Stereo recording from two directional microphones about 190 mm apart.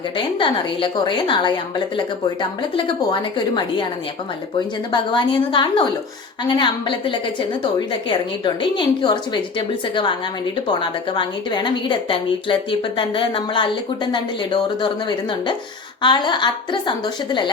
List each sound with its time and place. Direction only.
0.3 s a woman's voice: 25° left (ahead or behind)
4.9 s a woman's voice: 25° left (ahead or behind)
8.4 s a woman's voice: 25° left (ahead or behind)